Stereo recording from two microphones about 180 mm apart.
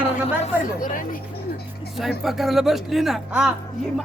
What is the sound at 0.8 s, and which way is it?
Speech, 50° left (ahead or behind).